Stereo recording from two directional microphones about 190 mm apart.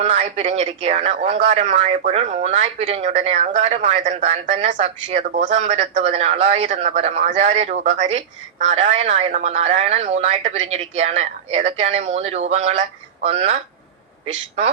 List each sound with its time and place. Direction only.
0.0 s speech: 35° right (ahead or behind)